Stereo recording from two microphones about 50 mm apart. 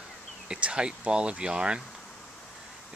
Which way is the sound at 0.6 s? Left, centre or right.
Right.